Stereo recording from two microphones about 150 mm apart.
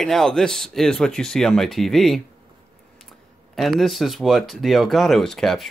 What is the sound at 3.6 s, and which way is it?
Speech, centre (ahead or behind).